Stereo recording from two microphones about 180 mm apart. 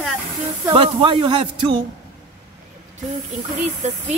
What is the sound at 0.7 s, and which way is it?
Speech, 30° right (ahead or behind).